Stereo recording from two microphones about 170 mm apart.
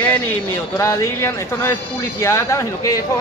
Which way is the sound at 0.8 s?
15° left (ahead or behind).